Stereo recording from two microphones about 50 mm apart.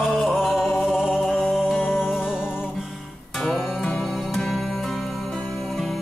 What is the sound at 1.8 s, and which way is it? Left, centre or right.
Music, left.